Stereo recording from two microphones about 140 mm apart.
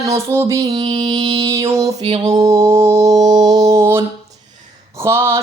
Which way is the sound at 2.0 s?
40° right (ahead or behind).